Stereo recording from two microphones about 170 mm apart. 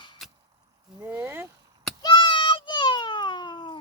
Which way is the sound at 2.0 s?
25° left (ahead or behind).